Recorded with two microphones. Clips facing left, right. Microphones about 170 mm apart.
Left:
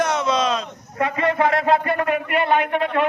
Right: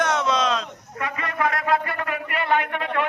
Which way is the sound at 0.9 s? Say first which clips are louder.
Left 8 dB; 30° left (ahead or behind).